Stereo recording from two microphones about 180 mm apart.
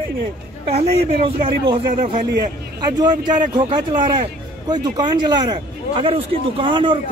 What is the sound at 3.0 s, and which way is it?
A man's voice, 25° right (ahead or behind).